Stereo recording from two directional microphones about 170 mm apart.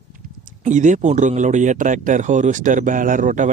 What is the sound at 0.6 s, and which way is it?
Speech, 45° right (ahead or behind).